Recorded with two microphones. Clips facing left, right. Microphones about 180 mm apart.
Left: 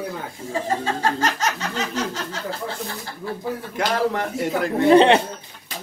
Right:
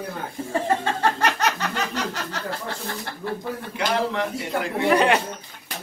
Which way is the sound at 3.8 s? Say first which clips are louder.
Left 2 dB; 40° left (ahead or behind).